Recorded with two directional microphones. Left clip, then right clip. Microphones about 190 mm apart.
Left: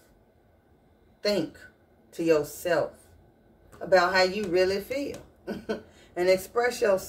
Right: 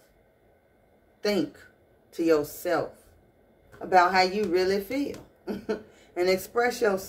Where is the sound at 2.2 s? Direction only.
25° right (ahead or behind).